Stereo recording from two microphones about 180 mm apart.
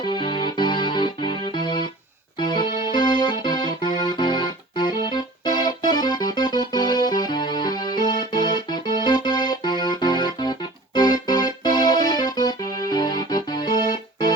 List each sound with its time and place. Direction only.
0.0 s music: 25° left (ahead or behind)
2.4 s keyboard: 25° left (ahead or behind)